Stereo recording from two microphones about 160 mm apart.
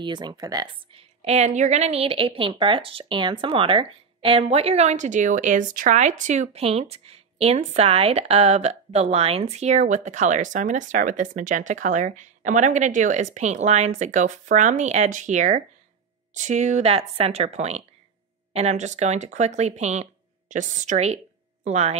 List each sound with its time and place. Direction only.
0.0 s speech: 25° right (ahead or behind)
1.2 s speech: 40° right (ahead or behind)